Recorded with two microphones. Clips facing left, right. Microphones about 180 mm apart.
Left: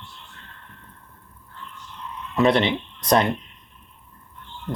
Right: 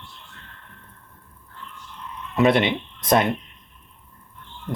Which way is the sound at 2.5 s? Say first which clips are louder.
Even; 20° right (ahead or behind).